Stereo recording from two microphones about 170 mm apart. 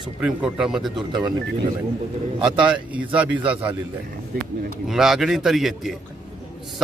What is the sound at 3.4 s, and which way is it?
Speech, 10° right (ahead or behind).